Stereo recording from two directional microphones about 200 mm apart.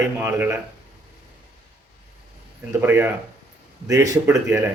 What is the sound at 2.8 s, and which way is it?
A man's voice, 10° right (ahead or behind).